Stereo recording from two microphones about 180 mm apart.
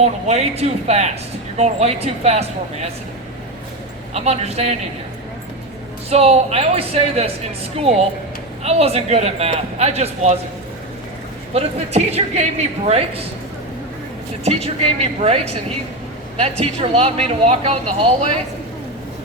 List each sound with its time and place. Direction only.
0.0 s speech: 35° right (ahead or behind)
4.1 s speech: 35° right (ahead or behind)
6.1 s speech: 35° right (ahead or behind)
8.6 s speech: 35° right (ahead or behind)
11.5 s speech: 35° right (ahead or behind)
14.4 s speech: 35° right (ahead or behind)
16.4 s speech: 35° right (ahead or behind)